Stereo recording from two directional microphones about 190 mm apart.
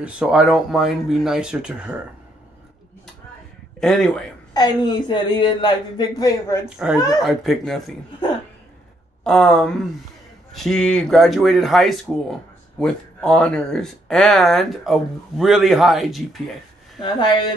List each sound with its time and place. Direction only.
0.0 s speech: 5° right (ahead or behind)
3.8 s speech: centre (ahead or behind)
4.6 s speech: 20° left (ahead or behind)
6.8 s speech: 5° right (ahead or behind)
9.2 s speech: 5° left (ahead or behind)
17.0 s speech: 25° left (ahead or behind)